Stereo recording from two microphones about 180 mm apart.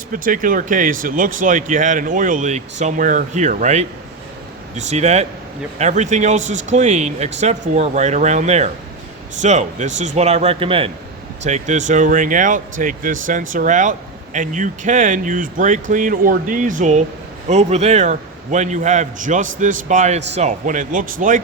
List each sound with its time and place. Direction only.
0.1 s a man's voice: 50° right (ahead or behind)